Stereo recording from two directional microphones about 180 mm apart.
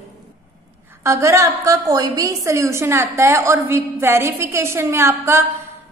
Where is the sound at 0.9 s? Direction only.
15° right (ahead or behind).